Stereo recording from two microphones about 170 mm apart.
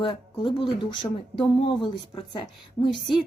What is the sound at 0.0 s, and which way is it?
A woman's voice, 30° left (ahead or behind).